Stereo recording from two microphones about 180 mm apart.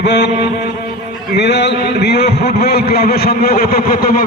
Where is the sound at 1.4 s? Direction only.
70° left (ahead or behind).